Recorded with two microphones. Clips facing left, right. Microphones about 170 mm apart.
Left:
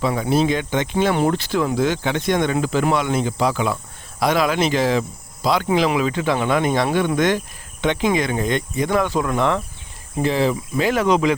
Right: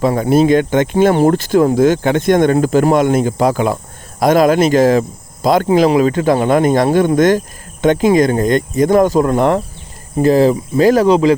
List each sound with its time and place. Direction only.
0.0 s speech: 45° right (ahead or behind)